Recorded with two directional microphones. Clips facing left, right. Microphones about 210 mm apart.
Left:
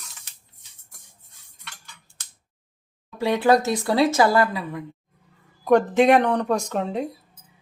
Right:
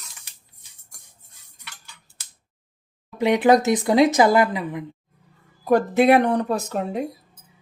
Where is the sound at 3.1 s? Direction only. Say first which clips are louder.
Right 2 dB; 20° right (ahead or behind).